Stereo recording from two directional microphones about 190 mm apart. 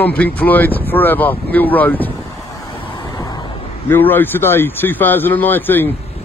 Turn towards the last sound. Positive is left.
turn(degrees=10)  # may be behind; listen again after turning